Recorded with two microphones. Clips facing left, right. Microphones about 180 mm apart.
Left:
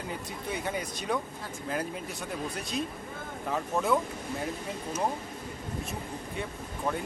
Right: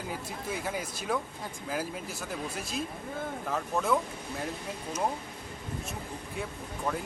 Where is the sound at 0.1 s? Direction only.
5° right (ahead or behind).